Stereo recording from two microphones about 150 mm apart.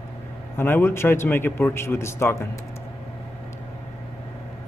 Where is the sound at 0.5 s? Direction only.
15° left (ahead or behind).